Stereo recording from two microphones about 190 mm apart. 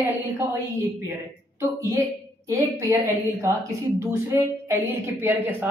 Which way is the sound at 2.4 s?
15° right (ahead or behind).